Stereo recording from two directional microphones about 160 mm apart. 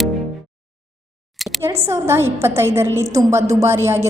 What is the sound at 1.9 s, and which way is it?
A woman's voice, 15° right (ahead or behind).